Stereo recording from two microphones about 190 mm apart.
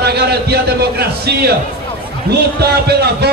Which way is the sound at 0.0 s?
60° right (ahead or behind).